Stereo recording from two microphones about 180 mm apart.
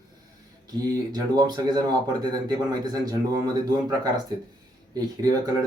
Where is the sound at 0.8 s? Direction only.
20° right (ahead or behind).